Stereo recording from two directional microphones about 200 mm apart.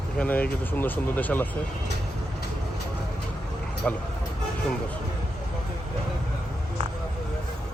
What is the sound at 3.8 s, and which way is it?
Speech, 5° left (ahead or behind).